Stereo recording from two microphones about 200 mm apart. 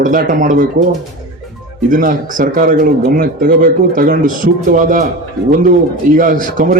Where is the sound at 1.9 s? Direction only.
45° right (ahead or behind).